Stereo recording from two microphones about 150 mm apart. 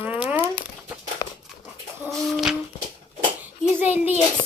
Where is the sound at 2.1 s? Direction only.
Centre (ahead or behind).